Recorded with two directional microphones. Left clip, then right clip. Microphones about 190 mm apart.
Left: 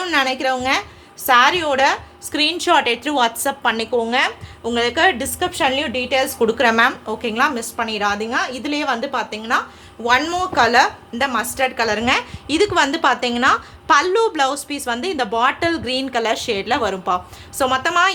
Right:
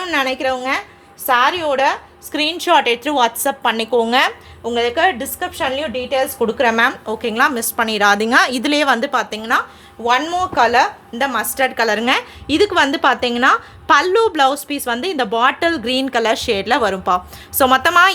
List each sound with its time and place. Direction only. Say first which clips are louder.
0.0 s a woman's voice: even; 10° right (ahead or behind)
4.6 s a woman's voice: right 1 dB; 5° right (ahead or behind); by 9.6 s 20° right (ahead or behind)
10.0 s a woman's voice: right 1 dB; 10° right (ahead or behind); by 18.1 s 30° right (ahead or behind)